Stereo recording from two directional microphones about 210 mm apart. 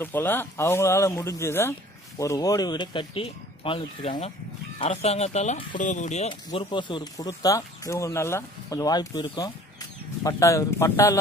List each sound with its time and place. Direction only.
0.0 s speech: 10° left (ahead or behind)